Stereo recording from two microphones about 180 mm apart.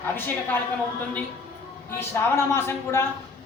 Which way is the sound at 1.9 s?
15° left (ahead or behind).